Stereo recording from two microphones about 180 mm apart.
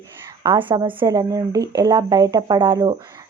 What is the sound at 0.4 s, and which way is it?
Speech, 25° right (ahead or behind).